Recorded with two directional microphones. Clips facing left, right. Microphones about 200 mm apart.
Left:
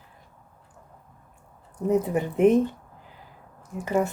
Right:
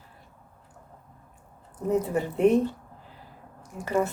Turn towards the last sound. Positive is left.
turn(degrees=20)  # may be behind; listen again after turning